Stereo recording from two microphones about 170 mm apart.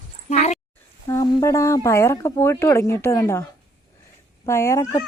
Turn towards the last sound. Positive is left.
turn(degrees=20)  # may be behind; listen again after turning